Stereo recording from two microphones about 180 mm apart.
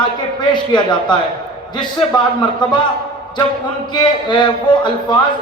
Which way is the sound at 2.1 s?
25° left (ahead or behind).